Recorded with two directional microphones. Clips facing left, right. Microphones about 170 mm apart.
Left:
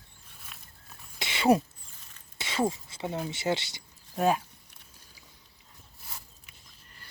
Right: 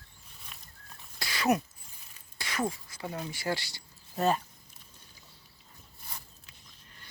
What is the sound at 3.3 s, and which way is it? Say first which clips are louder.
Speech: left 3 dB; 20° left (ahead or behind).